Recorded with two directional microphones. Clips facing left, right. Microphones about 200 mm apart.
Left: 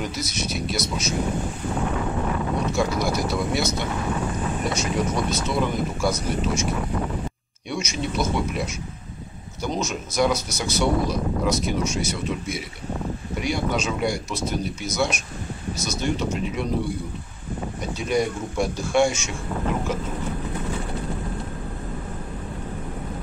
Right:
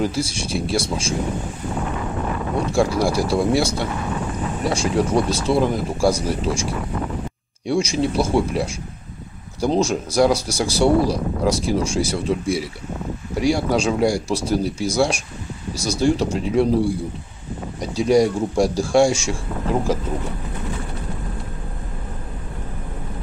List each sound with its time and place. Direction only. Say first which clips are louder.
0.0 s speech: right 6 dB; 30° right (ahead or behind)
2.7 s speech: right 7 dB; 30° right (ahead or behind)
7.6 s speech: right 8 dB; 30° right (ahead or behind)